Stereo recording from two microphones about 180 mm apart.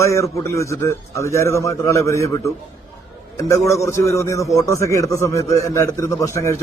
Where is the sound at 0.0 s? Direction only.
15° left (ahead or behind).